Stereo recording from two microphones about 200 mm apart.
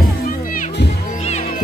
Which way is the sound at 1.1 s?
30° left (ahead or behind).